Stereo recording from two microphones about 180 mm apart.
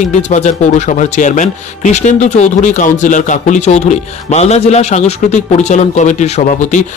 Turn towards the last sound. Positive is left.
turn(degrees=45)  # may be behind; listen again after turning